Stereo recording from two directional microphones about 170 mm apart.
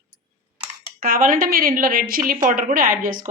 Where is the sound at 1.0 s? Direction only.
55° right (ahead or behind).